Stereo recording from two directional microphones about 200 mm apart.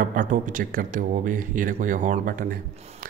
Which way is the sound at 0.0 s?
40° right (ahead or behind).